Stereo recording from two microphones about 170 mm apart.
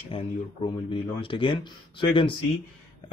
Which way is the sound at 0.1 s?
30° left (ahead or behind).